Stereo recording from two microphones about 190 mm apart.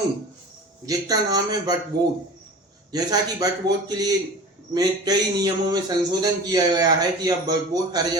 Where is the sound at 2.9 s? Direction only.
20° right (ahead or behind).